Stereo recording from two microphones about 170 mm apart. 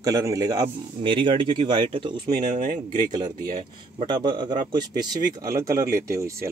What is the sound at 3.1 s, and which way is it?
Speech, 25° right (ahead or behind).